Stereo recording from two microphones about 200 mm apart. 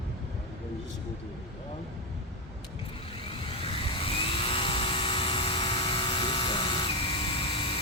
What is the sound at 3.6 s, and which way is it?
Vehicle, 30° left (ahead or behind).